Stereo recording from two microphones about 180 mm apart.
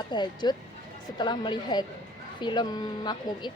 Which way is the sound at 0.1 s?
25° left (ahead or behind).